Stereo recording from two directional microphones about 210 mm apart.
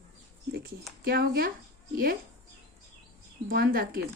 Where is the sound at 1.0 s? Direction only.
45° right (ahead or behind).